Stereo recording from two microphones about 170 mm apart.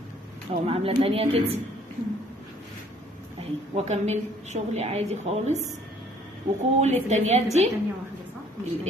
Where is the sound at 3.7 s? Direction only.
40° right (ahead or behind).